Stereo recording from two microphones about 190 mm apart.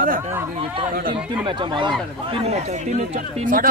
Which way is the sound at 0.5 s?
30° right (ahead or behind).